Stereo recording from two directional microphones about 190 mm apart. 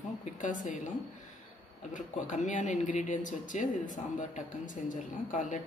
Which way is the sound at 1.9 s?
40° left (ahead or behind).